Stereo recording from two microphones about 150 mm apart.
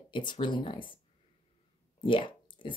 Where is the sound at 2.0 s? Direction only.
35° left (ahead or behind).